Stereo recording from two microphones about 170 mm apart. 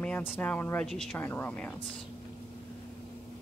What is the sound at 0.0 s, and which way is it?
Speech, 10° left (ahead or behind).